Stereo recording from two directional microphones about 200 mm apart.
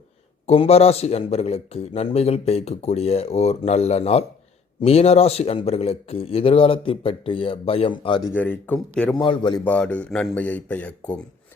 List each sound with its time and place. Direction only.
0.4 s a man's voice: 30° left (ahead or behind)
8.3 s speech: 10° left (ahead or behind)
9.1 s a man's voice: 25° left (ahead or behind)
9.6 s speech: 5° left (ahead or behind)